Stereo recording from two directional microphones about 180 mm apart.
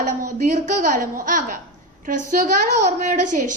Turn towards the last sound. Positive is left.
turn(degrees=-45)  # may be behind; listen again after turning